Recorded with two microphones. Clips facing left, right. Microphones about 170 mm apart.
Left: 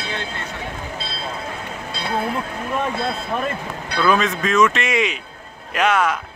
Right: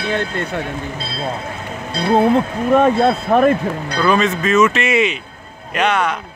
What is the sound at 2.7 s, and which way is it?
Speech, 60° right (ahead or behind).